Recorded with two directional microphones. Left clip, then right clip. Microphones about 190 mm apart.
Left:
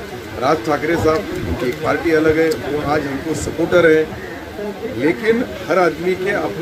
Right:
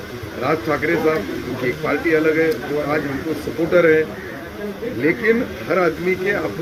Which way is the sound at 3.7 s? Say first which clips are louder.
Left 2 dB; 20° left (ahead or behind).